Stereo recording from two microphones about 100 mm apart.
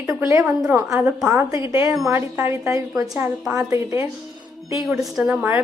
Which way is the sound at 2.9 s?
35° right (ahead or behind).